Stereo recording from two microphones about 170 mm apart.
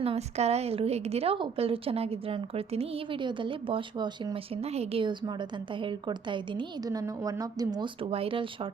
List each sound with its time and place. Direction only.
0.0 s a woman's voice: 35° right (ahead or behind)
4.6 s a woman's voice: 35° right (ahead or behind); by 7.9 s 20° right (ahead or behind)
8.1 s a woman's voice: 30° right (ahead or behind)